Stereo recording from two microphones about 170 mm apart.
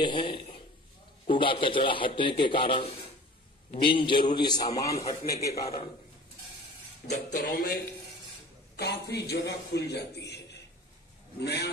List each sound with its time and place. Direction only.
0.0 s a sound: 30° left (ahead or behind)
1.3 s a man's voice: 30° left (ahead or behind)
7.1 s speech: 50° left (ahead or behind)
8.7 s a man's voice: 75° left (ahead or behind)